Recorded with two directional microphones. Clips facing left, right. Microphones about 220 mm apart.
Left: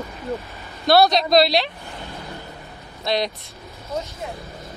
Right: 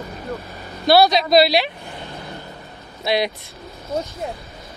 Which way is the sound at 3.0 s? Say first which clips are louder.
Right 2 dB; 10° right (ahead or behind).